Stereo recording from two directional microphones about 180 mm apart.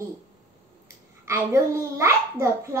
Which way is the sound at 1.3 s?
15° right (ahead or behind).